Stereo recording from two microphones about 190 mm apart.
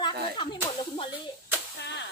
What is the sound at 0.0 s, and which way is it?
Whip, 25° left (ahead or behind).